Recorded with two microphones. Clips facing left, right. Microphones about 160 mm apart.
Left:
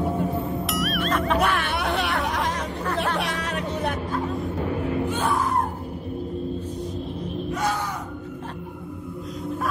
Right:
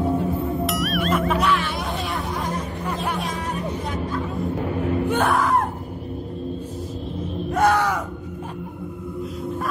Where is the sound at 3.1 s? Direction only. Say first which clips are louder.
Even; 75° left (ahead or behind); by 4.1 s 60° left (ahead or behind).